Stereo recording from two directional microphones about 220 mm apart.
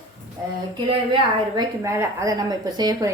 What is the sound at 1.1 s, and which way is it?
A woman's voice, 15° right (ahead or behind).